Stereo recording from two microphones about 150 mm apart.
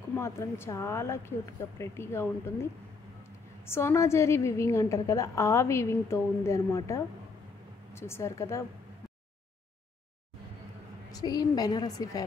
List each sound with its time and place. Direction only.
0.1 s a woman's voice: 15° left (ahead or behind)
11.1 s a woman's voice: 25° left (ahead or behind)